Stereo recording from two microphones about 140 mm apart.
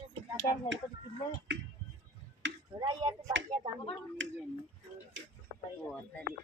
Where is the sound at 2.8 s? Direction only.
30° right (ahead or behind).